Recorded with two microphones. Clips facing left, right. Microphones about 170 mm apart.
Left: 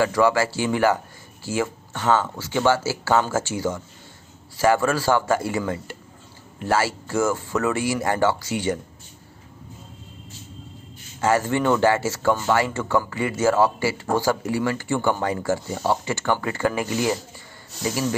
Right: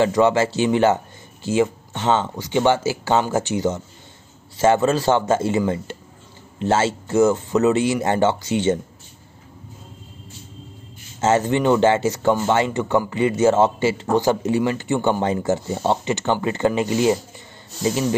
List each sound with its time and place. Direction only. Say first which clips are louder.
0.0 s speech: right 3 dB; 20° right (ahead or behind)
11.1 s speech: right 3 dB; 20° right (ahead or behind)